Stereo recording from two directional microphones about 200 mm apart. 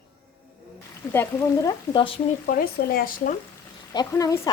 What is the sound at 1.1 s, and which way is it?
A woman's voice, 10° left (ahead or behind).